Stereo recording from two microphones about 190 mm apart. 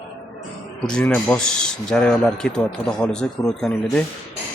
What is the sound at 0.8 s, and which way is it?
A man's voice, 5° left (ahead or behind).